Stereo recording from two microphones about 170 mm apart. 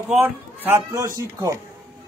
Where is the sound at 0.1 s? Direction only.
10° right (ahead or behind).